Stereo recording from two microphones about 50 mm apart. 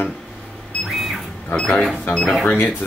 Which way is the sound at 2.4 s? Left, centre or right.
Left.